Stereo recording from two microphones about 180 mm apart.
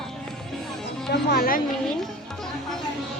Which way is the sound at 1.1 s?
60° left (ahead or behind).